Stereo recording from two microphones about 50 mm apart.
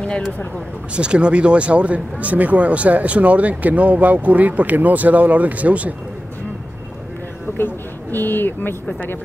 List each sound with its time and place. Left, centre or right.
0.9 s speech: right
7.5 s speech: left